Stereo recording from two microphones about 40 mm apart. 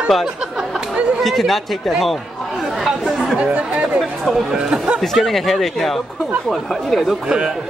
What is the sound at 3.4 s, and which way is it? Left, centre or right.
Speech, right.